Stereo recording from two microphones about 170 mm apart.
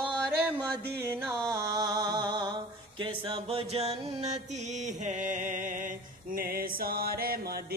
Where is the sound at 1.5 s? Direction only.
20° right (ahead or behind).